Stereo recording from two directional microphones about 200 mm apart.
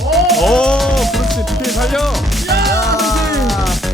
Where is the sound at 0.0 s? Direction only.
Centre (ahead or behind).